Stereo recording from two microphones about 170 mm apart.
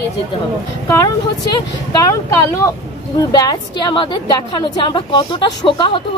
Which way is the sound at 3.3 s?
25° left (ahead or behind).